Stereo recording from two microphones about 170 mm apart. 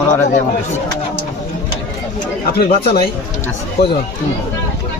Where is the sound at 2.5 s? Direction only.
65° left (ahead or behind).